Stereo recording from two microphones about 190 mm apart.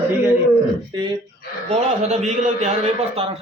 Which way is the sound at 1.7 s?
35° right (ahead or behind).